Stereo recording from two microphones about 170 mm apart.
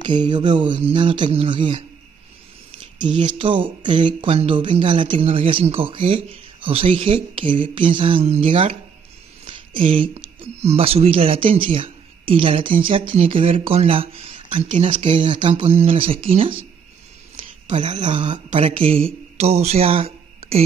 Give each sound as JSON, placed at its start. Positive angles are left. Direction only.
{"t": 0.0, "sound": "speech", "side_deg": -25}
{"t": 3.0, "sound": "speech", "side_deg": -25}
{"t": 9.4, "sound": "a sound", "side_deg": -30}
{"t": 10.6, "sound": "speech", "side_deg": -35}
{"t": 17.7, "sound": "speech", "side_deg": -40}
{"t": 18.1, "sound": "speech", "side_deg": -30}